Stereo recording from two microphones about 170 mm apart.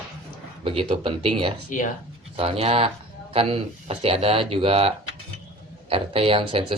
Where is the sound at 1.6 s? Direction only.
50° left (ahead or behind).